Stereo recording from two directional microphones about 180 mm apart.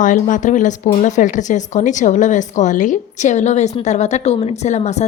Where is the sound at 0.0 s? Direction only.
45° left (ahead or behind).